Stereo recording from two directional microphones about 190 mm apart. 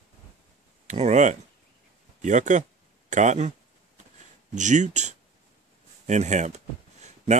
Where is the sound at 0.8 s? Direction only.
40° right (ahead or behind).